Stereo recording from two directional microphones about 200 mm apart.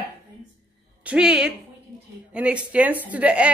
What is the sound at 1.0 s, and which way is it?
A woman's voice, 5° right (ahead or behind).